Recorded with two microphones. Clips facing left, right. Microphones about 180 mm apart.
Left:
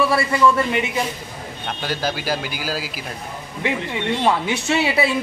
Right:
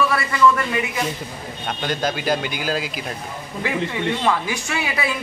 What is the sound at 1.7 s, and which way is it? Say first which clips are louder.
Speech: right 1 dB; 5° left (ahead or behind).